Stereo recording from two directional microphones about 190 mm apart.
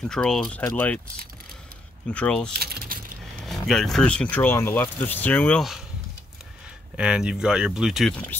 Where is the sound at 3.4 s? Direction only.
Centre (ahead or behind).